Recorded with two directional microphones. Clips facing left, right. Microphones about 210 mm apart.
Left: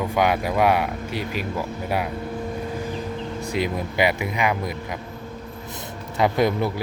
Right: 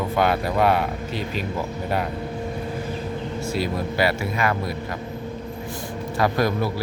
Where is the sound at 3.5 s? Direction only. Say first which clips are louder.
Left 1 dB; 15° left (ahead or behind).